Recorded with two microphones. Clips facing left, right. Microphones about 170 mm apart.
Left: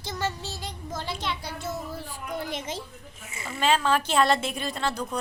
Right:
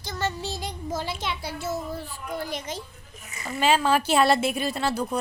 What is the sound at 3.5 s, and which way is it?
A woman's voice, 5° right (ahead or behind).